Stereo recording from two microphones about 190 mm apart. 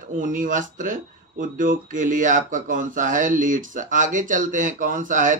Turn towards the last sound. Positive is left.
turn(degrees=-45)  # may be behind; listen again after turning